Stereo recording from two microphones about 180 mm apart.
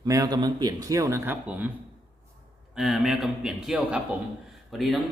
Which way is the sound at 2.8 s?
Centre (ahead or behind).